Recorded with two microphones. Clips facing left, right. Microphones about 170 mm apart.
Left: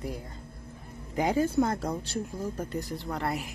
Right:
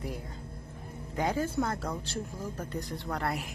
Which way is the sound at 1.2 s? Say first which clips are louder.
Left 5 dB; 15° left (ahead or behind).